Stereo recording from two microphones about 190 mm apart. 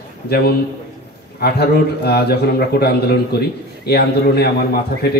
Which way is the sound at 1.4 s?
55° left (ahead or behind).